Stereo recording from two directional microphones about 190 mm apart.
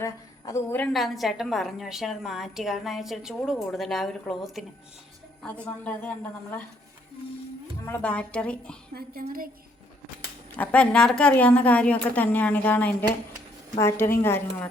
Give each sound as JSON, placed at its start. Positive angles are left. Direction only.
{"t": 0.0, "sound": "a woman's voice", "side_deg": 15}
{"t": 0.9, "sound": "a woman's voice", "side_deg": 0}
{"t": 5.6, "sound": "a woman's voice", "side_deg": 10}
{"t": 7.9, "sound": "a woman's voice", "side_deg": 10}
{"t": 9.0, "sound": "a woman's voice", "side_deg": -50}
{"t": 10.6, "sound": "a woman's voice", "side_deg": 5}